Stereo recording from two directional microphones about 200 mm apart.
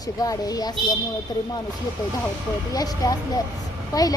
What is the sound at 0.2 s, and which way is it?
Speech, 20° left (ahead or behind).